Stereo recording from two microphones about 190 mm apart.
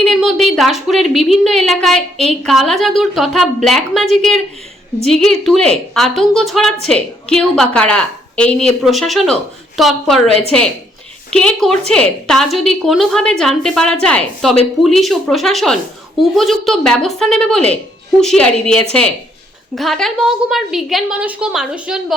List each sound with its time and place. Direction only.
0.0 s a woman's voice: centre (ahead or behind)
10.2 s a woman's voice: 35° right (ahead or behind)
11.3 s a woman's voice: 5° left (ahead or behind)